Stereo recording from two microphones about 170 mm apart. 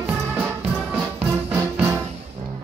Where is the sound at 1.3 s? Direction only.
15° right (ahead or behind).